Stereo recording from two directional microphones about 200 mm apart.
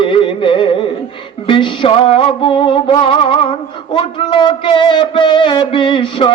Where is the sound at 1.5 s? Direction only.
25° left (ahead or behind).